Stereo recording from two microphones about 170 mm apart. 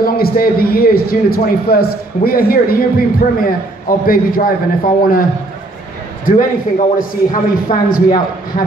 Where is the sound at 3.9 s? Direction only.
60° left (ahead or behind).